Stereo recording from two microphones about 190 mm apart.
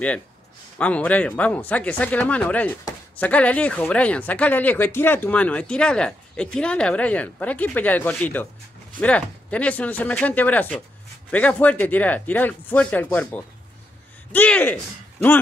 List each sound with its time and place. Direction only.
0.7 s speech: 5° left (ahead or behind)